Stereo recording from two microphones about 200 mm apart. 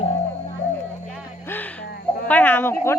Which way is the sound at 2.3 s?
10° left (ahead or behind).